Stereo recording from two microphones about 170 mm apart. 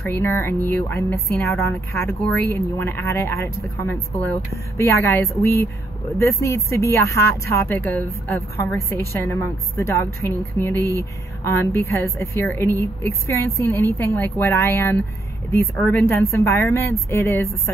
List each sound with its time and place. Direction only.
0.0 s speech: 15° left (ahead or behind)